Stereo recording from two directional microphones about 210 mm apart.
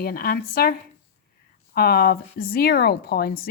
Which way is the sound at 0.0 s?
45° left (ahead or behind).